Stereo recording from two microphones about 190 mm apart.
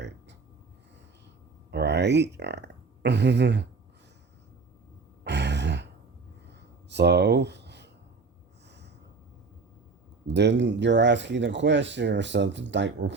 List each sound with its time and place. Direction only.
1.7 s speech: 65° right (ahead or behind)
5.2 s sigh: 65° right (ahead or behind)
6.5 s a sound: 65° right (ahead or behind)
10.2 s speech: 65° right (ahead or behind)